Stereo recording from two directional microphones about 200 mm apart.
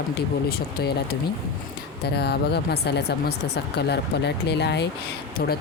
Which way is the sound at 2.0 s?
55° left (ahead or behind).